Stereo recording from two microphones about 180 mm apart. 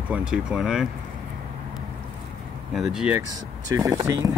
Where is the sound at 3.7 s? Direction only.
15° right (ahead or behind).